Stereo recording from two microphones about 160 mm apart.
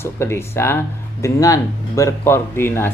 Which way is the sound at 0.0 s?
15° left (ahead or behind).